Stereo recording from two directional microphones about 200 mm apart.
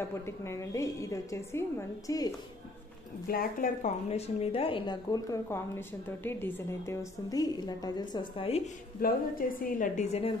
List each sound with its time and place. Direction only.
0.4 s a woman's voice: 15° left (ahead or behind)
3.3 s a woman's voice: 45° left (ahead or behind); by 8.6 s 30° left (ahead or behind)
9.6 s a woman's voice: 45° left (ahead or behind)